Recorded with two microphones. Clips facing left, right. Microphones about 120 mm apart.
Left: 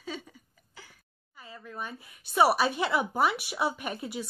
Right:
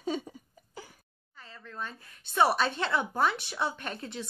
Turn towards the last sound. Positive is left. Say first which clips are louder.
# left 3 dB
turn(degrees=10)  # may be behind; listen again after turning